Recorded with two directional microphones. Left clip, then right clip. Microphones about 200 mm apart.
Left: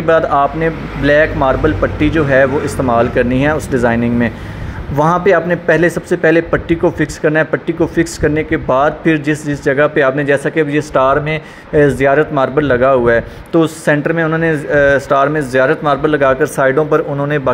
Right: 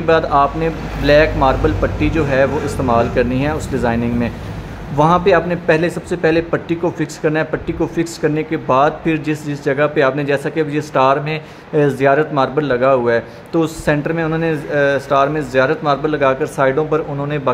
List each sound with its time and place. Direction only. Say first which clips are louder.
0.0 s a man's voice: left 2 dB; 15° left (ahead or behind)